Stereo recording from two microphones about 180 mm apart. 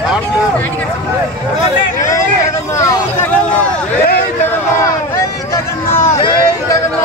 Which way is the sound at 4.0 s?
55° left (ahead or behind).